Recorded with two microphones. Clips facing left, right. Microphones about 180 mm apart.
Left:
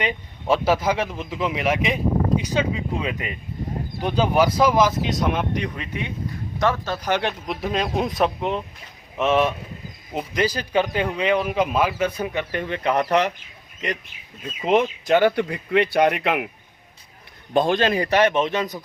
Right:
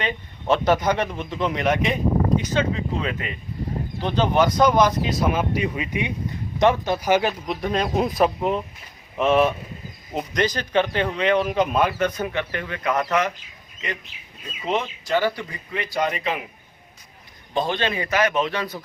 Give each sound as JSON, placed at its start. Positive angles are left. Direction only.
{"t": 0.0, "sound": "speech", "side_deg": 10}
{"t": 15.1, "sound": "speech", "side_deg": 65}
{"t": 17.5, "sound": "a man's voice", "side_deg": 50}